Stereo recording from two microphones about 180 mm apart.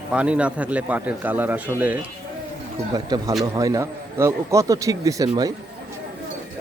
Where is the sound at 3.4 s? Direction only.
20° right (ahead or behind).